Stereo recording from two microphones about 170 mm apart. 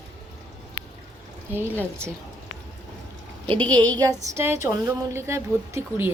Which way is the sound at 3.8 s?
10° left (ahead or behind).